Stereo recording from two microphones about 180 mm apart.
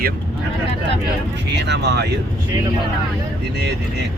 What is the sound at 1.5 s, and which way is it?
Speech, 70° right (ahead or behind).